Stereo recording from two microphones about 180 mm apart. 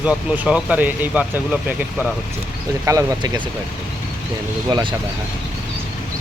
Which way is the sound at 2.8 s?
20° right (ahead or behind).